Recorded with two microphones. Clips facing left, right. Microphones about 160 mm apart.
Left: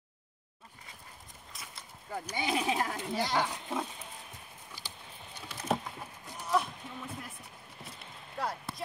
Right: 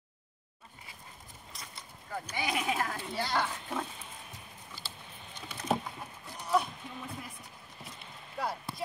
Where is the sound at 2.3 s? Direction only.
25° left (ahead or behind).